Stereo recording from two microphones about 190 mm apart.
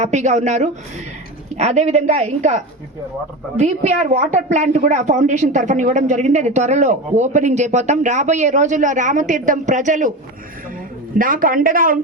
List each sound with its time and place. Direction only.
0.0 s a woman's voice: 40° right (ahead or behind)
11.2 s speech: 45° right (ahead or behind)